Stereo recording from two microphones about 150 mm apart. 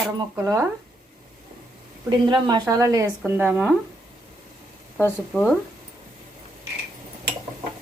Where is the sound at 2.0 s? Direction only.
30° right (ahead or behind); by 3.7 s 10° right (ahead or behind).